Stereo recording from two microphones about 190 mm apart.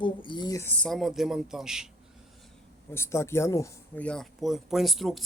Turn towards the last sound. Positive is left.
turn(degrees=0)  # may be behind; listen again after turning